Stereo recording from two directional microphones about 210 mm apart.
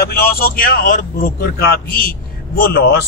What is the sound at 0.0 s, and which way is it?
Speech, 45° left (ahead or behind).